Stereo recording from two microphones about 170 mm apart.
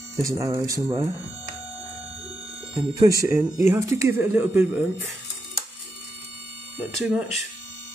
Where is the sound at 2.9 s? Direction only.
20° right (ahead or behind).